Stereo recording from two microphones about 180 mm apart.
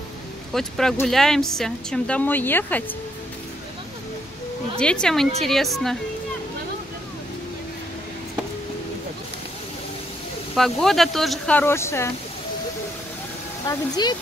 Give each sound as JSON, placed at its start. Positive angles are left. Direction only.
{"t": 0.5, "sound": "a woman's voice", "side_deg": 0}
{"t": 4.7, "sound": "speech", "side_deg": 5}
{"t": 10.5, "sound": "speech", "side_deg": 0}
{"t": 13.7, "sound": "speech", "side_deg": 25}